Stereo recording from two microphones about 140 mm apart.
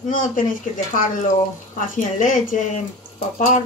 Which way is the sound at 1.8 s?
70° left (ahead or behind).